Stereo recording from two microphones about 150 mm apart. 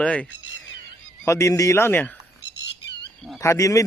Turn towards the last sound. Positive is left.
turn(degrees=20)  # may be behind; listen again after turning